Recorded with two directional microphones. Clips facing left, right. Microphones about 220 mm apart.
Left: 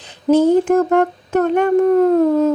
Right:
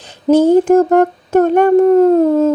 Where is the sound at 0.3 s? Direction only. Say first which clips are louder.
Right 3 dB; 40° right (ahead or behind).